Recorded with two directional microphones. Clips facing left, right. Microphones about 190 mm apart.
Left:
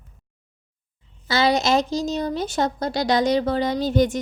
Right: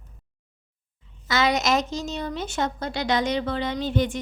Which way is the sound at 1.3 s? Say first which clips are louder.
Left 3 dB; 30° left (ahead or behind).